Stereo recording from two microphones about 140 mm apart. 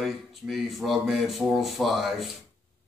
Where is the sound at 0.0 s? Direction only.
Centre (ahead or behind).